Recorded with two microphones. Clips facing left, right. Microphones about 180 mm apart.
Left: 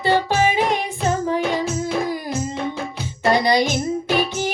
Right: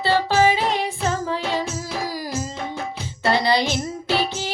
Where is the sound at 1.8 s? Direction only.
55° left (ahead or behind).